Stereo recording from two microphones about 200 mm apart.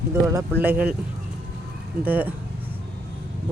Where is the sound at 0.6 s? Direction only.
10° right (ahead or behind).